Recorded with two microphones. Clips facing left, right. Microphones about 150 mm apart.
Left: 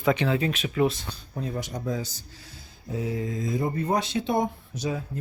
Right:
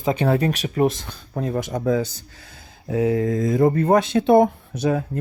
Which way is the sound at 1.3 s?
55° right (ahead or behind).